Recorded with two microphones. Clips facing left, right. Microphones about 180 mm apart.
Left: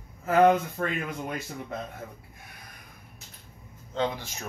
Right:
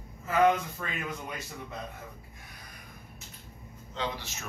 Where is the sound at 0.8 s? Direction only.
55° left (ahead or behind).